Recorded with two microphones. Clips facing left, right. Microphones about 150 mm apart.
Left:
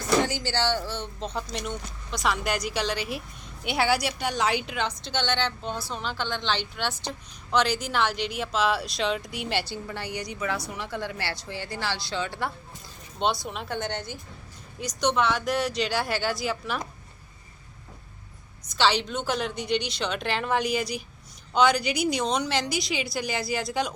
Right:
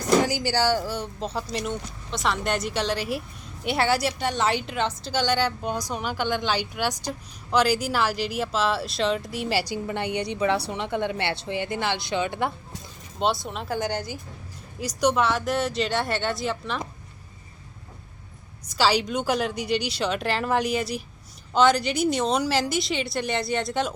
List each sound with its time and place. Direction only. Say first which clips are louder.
0.3 s speech: right 4 dB; 10° right (ahead or behind)
13.1 s speech: right 2 dB; centre (ahead or behind)
13.7 s speech: right 6 dB; 10° right (ahead or behind)
18.8 s speech: right 2 dB; 10° right (ahead or behind)